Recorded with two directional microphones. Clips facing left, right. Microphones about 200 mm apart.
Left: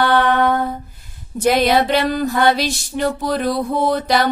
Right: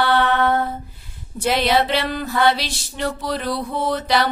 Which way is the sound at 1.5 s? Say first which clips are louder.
Left 3 dB; 45° left (ahead or behind).